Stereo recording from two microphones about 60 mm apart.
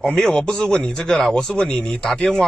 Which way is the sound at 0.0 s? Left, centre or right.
Centre.